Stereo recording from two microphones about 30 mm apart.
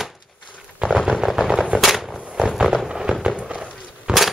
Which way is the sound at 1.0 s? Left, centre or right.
Centre.